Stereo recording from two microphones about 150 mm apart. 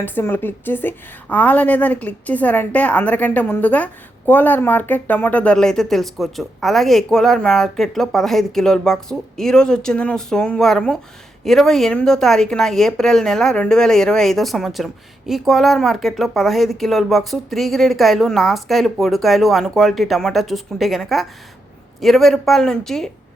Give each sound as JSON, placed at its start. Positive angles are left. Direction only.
{"t": 0.0, "sound": "a woman's voice", "side_deg": 15}